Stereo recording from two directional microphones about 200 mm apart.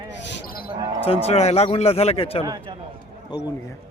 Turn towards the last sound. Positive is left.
turn(degrees=20)  # may be behind; listen again after turning